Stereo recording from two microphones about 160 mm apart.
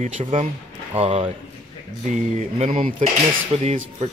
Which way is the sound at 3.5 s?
40° right (ahead or behind).